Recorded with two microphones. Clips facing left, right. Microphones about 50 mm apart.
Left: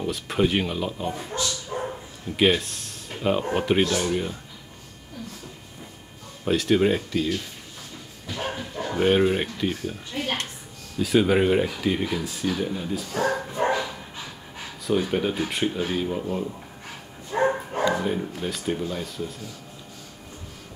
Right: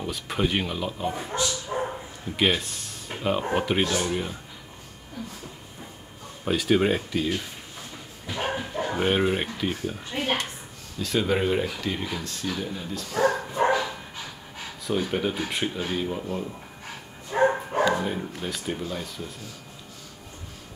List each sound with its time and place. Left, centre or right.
0.0 s speech: centre
1.1 s bow-wow: centre
2.3 s speech: centre
6.4 s speech: centre
8.3 s bow-wow: right
9.0 s speech: centre
10.1 s a woman's voice: right
11.0 s speech: centre
13.7 s dog: centre
14.9 s speech: centre
17.3 s bow-wow: centre
17.9 s speech: centre